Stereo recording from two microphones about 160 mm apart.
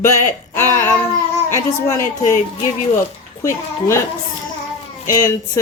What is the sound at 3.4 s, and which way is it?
Speech, 15° left (ahead or behind).